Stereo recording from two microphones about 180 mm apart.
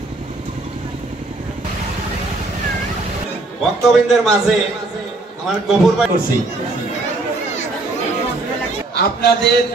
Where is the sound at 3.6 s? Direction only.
Centre (ahead or behind).